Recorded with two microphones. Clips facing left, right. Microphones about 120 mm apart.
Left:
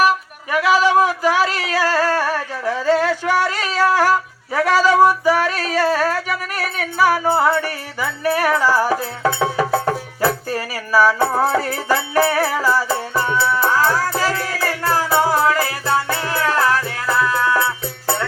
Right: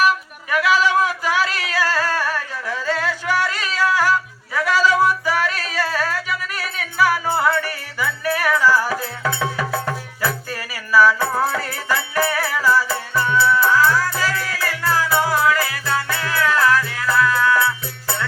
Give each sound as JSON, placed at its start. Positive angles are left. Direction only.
{"t": 0.5, "sound": "singing", "side_deg": 30}
{"t": 7.0, "sound": "music", "side_deg": 30}